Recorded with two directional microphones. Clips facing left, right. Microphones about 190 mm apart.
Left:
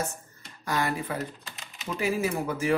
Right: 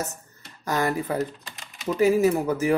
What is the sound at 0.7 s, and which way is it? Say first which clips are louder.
Speech: right 4 dB; 45° right (ahead or behind).